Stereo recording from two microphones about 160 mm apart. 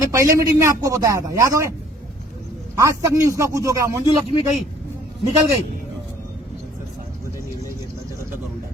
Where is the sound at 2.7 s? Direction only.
20° right (ahead or behind).